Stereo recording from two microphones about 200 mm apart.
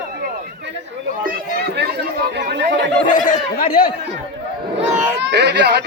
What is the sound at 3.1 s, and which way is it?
Speech, 40° left (ahead or behind).